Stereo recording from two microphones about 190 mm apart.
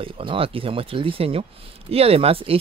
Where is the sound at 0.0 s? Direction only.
30° right (ahead or behind).